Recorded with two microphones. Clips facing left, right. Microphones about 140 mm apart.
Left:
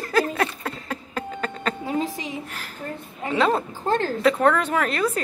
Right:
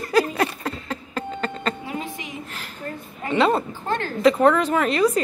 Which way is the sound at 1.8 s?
35° left (ahead or behind).